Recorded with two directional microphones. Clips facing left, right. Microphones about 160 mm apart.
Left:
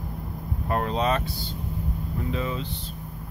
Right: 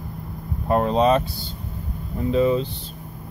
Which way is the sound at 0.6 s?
25° right (ahead or behind).